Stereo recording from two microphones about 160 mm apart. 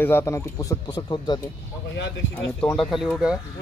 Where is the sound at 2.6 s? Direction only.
5° left (ahead or behind).